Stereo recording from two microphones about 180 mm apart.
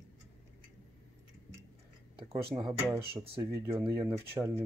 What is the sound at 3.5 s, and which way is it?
Speech, 15° right (ahead or behind).